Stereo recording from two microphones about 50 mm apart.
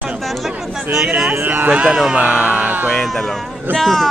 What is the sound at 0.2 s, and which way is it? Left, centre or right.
Chatter, centre.